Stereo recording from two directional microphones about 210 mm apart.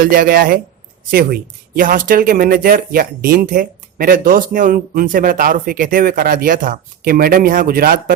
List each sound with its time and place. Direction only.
0.0 s speech: 40° right (ahead or behind)